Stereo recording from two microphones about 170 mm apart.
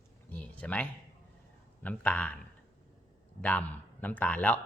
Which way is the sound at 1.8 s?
10° left (ahead or behind).